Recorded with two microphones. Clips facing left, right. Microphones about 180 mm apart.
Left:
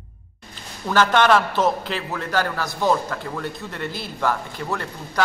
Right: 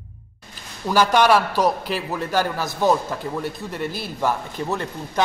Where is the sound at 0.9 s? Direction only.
10° right (ahead or behind).